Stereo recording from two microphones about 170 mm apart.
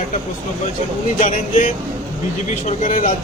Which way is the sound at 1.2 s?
50° left (ahead or behind).